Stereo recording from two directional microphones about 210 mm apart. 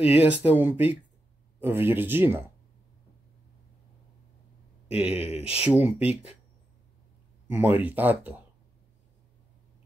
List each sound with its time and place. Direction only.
0.0 s speech: 5° right (ahead or behind)
5.1 s speech: 30° left (ahead or behind)
5.7 s speech: 5° right (ahead or behind)
7.4 s speech: 10° right (ahead or behind)